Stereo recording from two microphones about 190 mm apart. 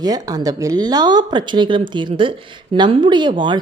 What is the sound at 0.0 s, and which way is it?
Speech, 20° right (ahead or behind).